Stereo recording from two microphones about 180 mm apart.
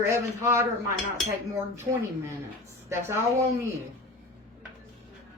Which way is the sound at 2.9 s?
15° right (ahead or behind).